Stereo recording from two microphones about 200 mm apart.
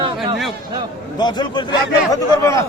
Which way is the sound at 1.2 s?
20° left (ahead or behind).